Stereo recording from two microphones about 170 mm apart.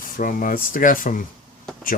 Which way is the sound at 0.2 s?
55° left (ahead or behind).